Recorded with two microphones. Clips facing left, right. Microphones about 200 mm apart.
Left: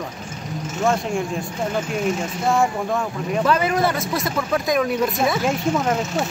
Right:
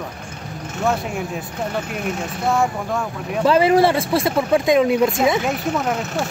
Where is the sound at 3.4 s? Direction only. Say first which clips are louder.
Right 6 dB; 30° right (ahead or behind).